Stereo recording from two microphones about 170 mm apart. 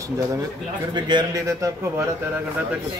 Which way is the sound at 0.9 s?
25° right (ahead or behind).